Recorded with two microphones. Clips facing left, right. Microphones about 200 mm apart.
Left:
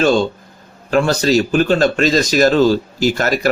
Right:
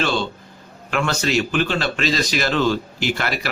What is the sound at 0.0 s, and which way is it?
Speech, 45° left (ahead or behind).